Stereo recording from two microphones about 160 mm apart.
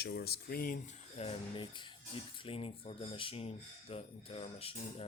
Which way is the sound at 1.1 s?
35° left (ahead or behind).